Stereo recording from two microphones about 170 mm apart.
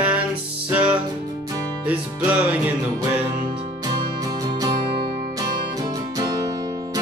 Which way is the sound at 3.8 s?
20° right (ahead or behind).